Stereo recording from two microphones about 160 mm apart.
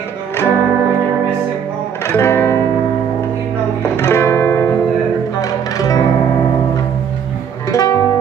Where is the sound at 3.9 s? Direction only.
15° left (ahead or behind).